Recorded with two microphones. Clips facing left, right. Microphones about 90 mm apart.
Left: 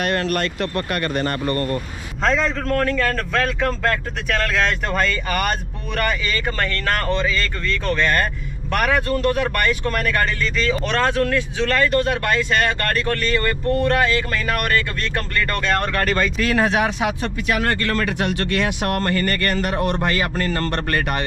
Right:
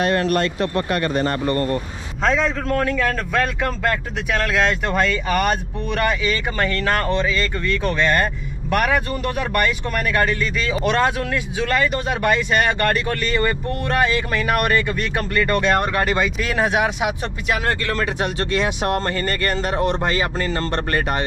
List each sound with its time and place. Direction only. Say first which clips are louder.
0.0 s speech: right 3 dB; 25° right (ahead or behind)
2.2 s a man's voice: even; centre (ahead or behind); by 21.0 s 20° right (ahead or behind)